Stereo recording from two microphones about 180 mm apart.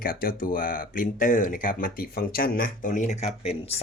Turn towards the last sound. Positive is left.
turn(degrees=35)  # may be behind; listen again after turning